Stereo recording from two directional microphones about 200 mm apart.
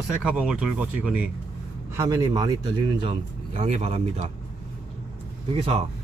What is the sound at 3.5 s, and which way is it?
Speech, 30° right (ahead or behind).